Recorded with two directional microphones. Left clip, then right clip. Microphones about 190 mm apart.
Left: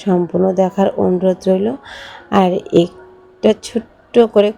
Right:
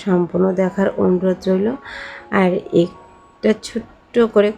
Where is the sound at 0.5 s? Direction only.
15° left (ahead or behind).